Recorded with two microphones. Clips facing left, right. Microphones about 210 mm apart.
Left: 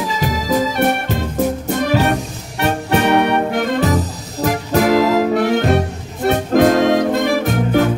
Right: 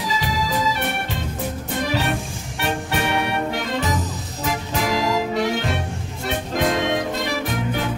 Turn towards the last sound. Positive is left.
turn(degrees=55)  # may be behind; listen again after turning